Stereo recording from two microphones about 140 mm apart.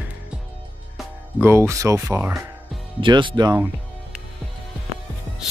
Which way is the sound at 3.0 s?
35° right (ahead or behind).